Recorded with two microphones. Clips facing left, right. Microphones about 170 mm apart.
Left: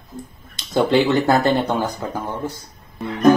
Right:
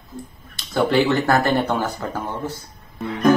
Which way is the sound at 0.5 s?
20° left (ahead or behind).